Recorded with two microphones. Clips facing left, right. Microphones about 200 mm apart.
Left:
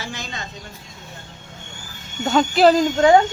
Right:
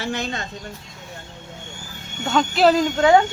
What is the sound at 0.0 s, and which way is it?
Speech, 60° right (ahead or behind).